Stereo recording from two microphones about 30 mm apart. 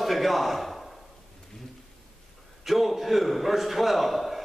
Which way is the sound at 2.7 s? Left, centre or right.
Centre.